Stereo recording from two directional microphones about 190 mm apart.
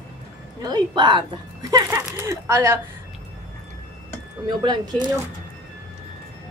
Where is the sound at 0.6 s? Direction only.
20° right (ahead or behind).